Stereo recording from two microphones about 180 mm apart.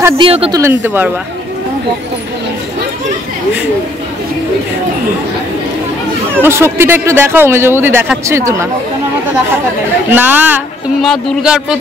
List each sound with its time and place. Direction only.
0.2 s speech: 30° right (ahead or behind)
0.6 s a man's voice: 15° right (ahead or behind)
6.3 s a man's voice: 15° right (ahead or behind)
10.1 s a man's voice: 10° right (ahead or behind)